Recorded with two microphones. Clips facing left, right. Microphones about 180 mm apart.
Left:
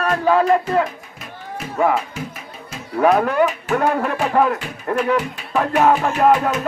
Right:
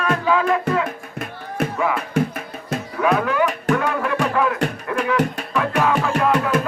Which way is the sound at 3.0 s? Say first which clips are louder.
Left 4 dB; 40° left (ahead or behind).